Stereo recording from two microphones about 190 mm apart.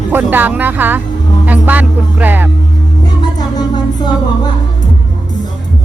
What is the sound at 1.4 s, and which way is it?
Speech, 10° right (ahead or behind).